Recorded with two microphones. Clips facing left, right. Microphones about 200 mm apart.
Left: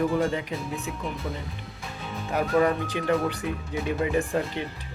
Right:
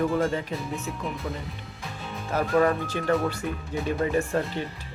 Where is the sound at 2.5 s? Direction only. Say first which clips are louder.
Right 1 dB; centre (ahead or behind).